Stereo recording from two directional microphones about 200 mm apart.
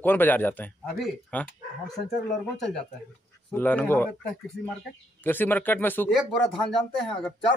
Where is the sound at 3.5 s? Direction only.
10° left (ahead or behind).